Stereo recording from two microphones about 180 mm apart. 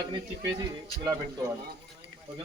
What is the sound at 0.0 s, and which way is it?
Speech, 25° right (ahead or behind).